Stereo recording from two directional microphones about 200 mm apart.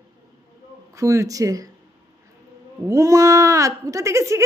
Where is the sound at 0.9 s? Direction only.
15° right (ahead or behind).